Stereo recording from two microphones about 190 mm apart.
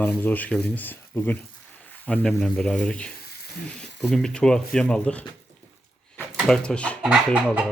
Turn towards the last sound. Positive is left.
turn(degrees=-5)  # may be behind; listen again after turning